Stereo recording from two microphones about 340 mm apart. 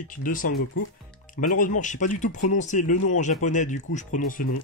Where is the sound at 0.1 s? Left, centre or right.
Left.